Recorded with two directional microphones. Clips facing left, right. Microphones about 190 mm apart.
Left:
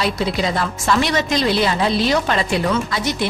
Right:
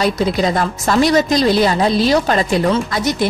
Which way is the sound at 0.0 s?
45° right (ahead or behind).